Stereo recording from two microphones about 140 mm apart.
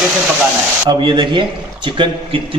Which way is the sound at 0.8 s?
35° right (ahead or behind).